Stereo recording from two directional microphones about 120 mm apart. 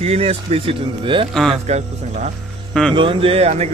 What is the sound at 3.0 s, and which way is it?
Speech, 50° right (ahead or behind).